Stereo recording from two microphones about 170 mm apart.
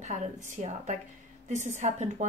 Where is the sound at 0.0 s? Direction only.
45° right (ahead or behind).